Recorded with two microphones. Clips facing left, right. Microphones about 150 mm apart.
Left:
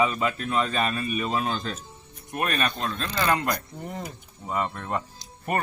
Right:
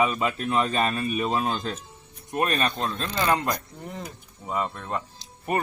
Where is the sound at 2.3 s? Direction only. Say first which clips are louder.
Right 2 dB; 25° right (ahead or behind).